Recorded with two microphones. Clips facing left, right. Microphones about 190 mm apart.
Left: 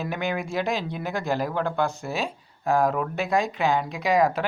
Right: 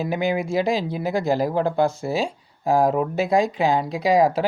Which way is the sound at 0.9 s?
35° right (ahead or behind).